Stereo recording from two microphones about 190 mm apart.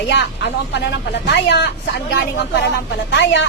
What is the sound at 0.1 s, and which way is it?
A woman's voice, 65° left (ahead or behind).